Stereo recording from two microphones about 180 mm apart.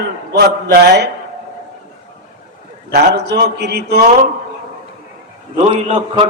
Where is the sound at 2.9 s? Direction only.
65° right (ahead or behind).